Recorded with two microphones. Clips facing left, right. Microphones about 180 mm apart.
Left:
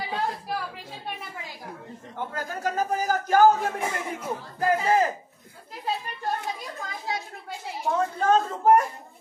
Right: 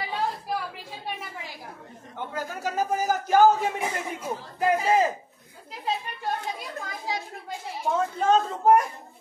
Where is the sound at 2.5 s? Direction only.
5° right (ahead or behind).